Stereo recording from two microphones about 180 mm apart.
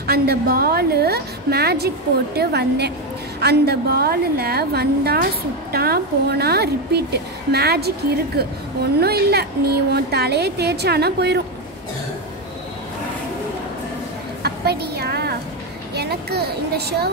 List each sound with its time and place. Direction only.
0.0 s a woman's voice: 60° right (ahead or behind)
14.4 s a sound: 65° right (ahead or behind)
15.9 s speech: 65° right (ahead or behind)